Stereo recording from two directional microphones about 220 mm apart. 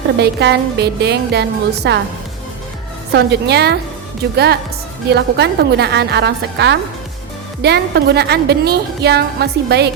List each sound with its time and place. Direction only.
0.2 s a woman's voice: 50° right (ahead or behind)
3.1 s a woman's voice: 50° right (ahead or behind)
5.0 s a woman's voice: 50° right (ahead or behind)